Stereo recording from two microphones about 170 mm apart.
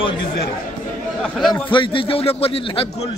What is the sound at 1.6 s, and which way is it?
A man's voice, 30° left (ahead or behind).